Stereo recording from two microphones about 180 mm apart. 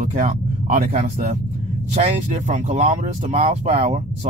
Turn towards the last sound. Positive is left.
turn(degrees=-35)  # may be behind; listen again after turning